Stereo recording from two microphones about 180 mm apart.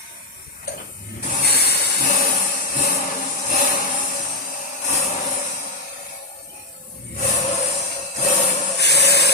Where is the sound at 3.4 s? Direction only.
45° left (ahead or behind).